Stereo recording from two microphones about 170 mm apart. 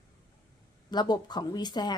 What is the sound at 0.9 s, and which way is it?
Speech, 25° left (ahead or behind).